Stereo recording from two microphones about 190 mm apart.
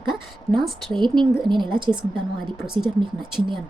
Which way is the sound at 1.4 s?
25° right (ahead or behind).